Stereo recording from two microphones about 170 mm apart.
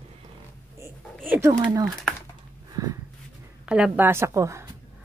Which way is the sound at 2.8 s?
20° right (ahead or behind).